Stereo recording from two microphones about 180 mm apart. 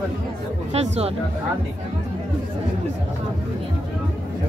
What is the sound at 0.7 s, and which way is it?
Speech, 35° right (ahead or behind).